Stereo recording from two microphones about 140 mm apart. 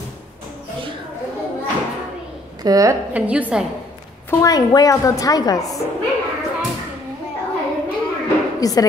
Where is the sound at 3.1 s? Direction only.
10° right (ahead or behind).